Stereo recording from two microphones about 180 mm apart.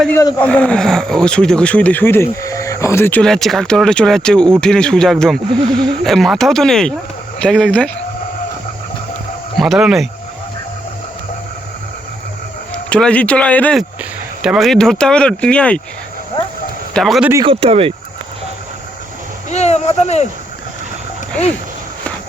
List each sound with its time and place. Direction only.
0.1 s speech: 15° left (ahead or behind)
9.6 s speech: centre (ahead or behind)
12.9 s speech: 5° left (ahead or behind)
16.9 s speech: centre (ahead or behind)
17.4 s speech: 30° right (ahead or behind)
19.5 s a sound: 40° left (ahead or behind)